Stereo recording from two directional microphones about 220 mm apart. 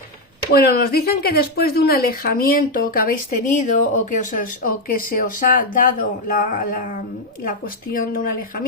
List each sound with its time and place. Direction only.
0.5 s speech: 45° left (ahead or behind)
7.9 s speech: 40° left (ahead or behind)